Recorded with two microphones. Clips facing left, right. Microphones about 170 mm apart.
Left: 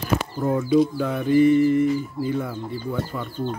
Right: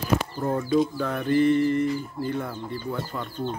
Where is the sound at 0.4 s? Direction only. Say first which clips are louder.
Left 6 dB; 5° left (ahead or behind).